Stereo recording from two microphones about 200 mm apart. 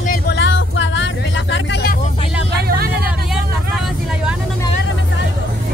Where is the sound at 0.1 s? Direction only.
60° left (ahead or behind).